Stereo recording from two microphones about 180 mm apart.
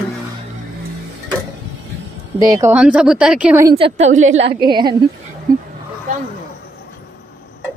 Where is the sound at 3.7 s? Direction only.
35° right (ahead or behind).